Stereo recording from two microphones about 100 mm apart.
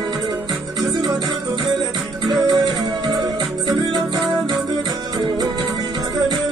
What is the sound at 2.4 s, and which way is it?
Music, 45° right (ahead or behind).